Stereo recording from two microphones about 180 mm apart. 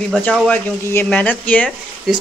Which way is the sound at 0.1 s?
10° left (ahead or behind).